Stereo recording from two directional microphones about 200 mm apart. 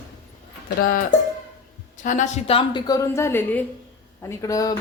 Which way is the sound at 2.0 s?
35° left (ahead or behind).